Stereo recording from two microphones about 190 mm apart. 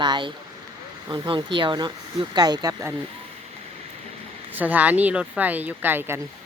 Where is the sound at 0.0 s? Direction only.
25° right (ahead or behind).